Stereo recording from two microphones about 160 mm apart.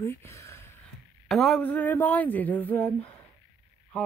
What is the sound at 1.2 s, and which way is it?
Speech, centre (ahead or behind).